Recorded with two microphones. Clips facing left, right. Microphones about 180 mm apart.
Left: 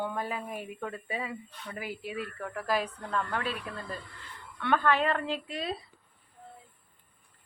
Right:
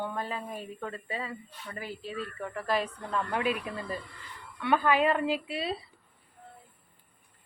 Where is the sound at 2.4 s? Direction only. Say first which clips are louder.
Right 1 dB; centre (ahead or behind).